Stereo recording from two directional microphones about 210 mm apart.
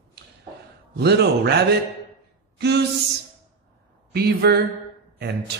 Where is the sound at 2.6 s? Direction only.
55° right (ahead or behind).